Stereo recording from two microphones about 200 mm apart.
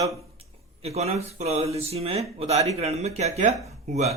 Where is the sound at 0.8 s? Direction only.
30° right (ahead or behind).